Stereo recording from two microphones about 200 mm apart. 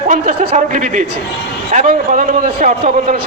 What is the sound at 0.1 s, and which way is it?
A man's voice, 40° right (ahead or behind).